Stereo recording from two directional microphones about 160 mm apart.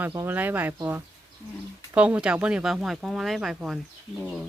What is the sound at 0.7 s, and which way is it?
Speech, 20° right (ahead or behind).